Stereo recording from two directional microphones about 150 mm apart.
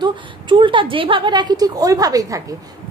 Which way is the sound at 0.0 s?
35° right (ahead or behind).